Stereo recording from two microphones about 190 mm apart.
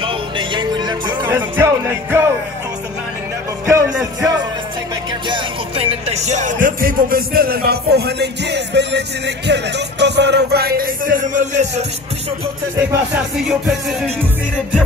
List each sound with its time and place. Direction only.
0.0 s music: 25° right (ahead or behind)
3.6 s music: 15° right (ahead or behind)
5.3 s music: 30° right (ahead or behind)
12.7 s music: 15° right (ahead or behind)
13.4 s music: centre (ahead or behind)